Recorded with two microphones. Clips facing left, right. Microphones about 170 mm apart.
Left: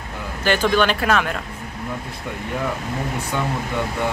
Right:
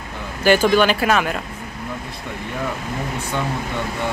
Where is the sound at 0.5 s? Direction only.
10° right (ahead or behind).